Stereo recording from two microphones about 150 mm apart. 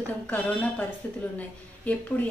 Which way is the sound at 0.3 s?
10° left (ahead or behind).